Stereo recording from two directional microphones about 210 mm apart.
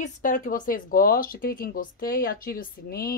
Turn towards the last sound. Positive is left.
turn(degrees=45)  # may be behind; listen again after turning